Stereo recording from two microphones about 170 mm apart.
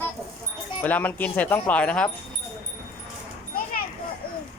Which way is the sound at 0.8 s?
10° left (ahead or behind).